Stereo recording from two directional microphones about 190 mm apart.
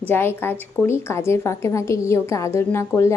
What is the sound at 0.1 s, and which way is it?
A woman's voice, 10° left (ahead or behind).